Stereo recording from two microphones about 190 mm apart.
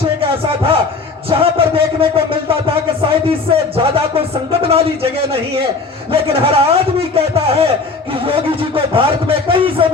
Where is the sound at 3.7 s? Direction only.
30° right (ahead or behind).